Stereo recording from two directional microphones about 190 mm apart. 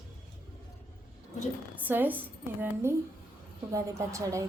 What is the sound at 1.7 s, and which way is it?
A woman's voice, 10° right (ahead or behind).